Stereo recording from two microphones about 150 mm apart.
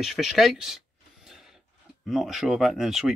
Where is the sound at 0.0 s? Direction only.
Centre (ahead or behind).